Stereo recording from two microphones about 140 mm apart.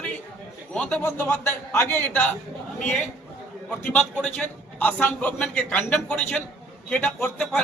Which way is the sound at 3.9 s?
10° left (ahead or behind).